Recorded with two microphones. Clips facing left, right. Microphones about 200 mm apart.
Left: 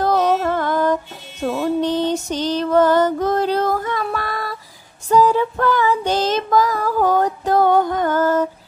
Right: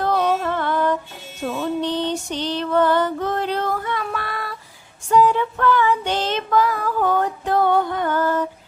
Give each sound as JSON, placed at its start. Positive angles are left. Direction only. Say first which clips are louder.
{"t": 0.0, "sound": "music", "louder": "left 3 dB", "side_deg": 40}
{"t": 5.0, "sound": "female singing", "louder": "left 2 dB", "side_deg": 40}